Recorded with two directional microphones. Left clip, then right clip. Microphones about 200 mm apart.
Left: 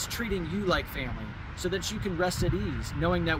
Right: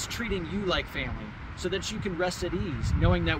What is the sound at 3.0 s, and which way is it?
Speech, 10° left (ahead or behind).